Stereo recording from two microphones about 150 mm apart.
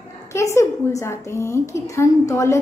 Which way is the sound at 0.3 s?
20° left (ahead or behind).